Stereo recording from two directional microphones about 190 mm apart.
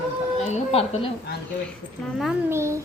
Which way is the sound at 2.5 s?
15° right (ahead or behind).